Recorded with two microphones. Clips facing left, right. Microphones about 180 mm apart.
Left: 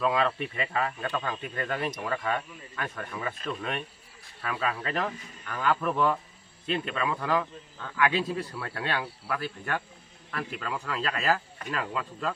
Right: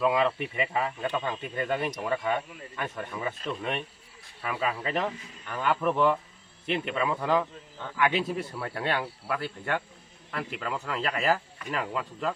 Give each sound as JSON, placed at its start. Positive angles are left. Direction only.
{"t": 0.0, "sound": "a man's voice", "side_deg": -20}